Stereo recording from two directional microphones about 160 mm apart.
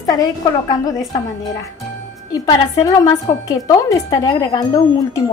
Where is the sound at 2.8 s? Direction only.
20° left (ahead or behind).